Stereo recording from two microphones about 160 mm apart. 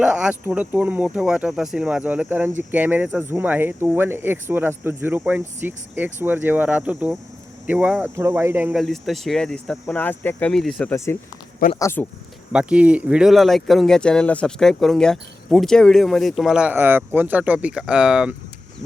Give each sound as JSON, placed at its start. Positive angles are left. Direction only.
{"t": 0.0, "sound": "speech", "side_deg": -5}
{"t": 8.8, "sound": "speech", "side_deg": 0}
{"t": 10.9, "sound": "speech", "side_deg": 15}
{"t": 12.5, "sound": "speech", "side_deg": -5}